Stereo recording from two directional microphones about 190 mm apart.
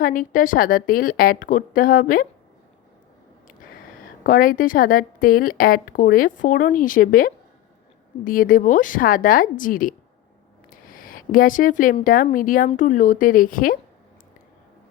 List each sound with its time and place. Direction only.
0.0 s a woman's voice: 45° left (ahead or behind)
4.2 s a woman's voice: 45° left (ahead or behind)